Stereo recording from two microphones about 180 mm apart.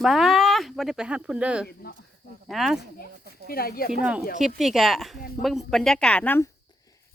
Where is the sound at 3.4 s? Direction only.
55° left (ahead or behind).